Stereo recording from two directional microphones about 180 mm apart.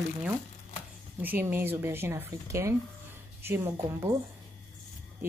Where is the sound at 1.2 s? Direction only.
10° right (ahead or behind).